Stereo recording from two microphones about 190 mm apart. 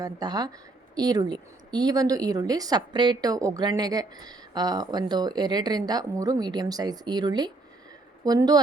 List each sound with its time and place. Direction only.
0.0 s a woman's voice: 20° right (ahead or behind)